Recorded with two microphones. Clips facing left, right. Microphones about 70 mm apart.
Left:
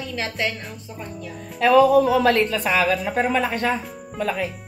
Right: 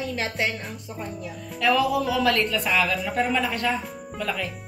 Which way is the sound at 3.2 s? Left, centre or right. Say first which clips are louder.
Left 1 dB; left.